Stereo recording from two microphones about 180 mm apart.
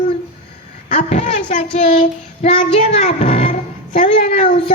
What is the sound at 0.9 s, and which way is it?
Child singing, 40° left (ahead or behind).